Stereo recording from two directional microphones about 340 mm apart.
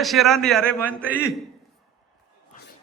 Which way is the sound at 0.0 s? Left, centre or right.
Centre.